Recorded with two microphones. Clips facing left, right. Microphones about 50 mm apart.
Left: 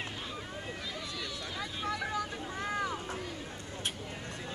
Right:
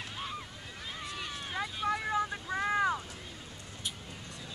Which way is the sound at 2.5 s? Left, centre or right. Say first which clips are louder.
Right 6 dB; right.